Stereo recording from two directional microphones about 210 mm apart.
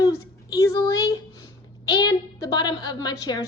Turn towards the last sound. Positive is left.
turn(degrees=20)  # may be behind; listen again after turning